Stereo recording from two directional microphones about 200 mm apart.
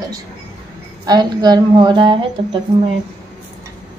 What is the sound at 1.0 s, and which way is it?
Speech, 20° right (ahead or behind).